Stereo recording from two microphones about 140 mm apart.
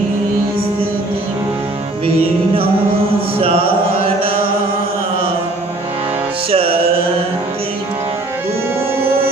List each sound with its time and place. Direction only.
3.3 s chant: 40° right (ahead or behind)
6.5 s music: 40° right (ahead or behind)